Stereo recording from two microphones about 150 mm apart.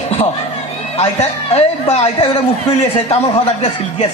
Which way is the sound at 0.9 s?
45° left (ahead or behind).